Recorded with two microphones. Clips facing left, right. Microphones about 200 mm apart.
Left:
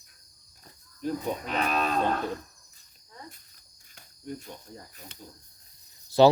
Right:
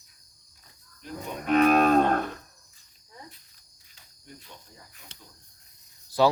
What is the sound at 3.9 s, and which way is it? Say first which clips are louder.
Cricket: left 11 dB; 50° left (ahead or behind).